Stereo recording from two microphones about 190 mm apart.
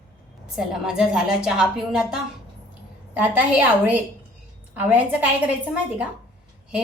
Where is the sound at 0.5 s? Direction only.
5° right (ahead or behind).